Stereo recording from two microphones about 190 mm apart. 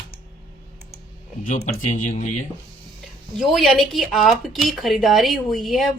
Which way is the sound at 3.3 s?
Centre (ahead or behind).